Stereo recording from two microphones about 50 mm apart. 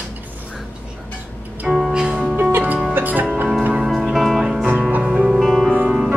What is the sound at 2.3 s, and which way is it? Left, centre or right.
Music, right.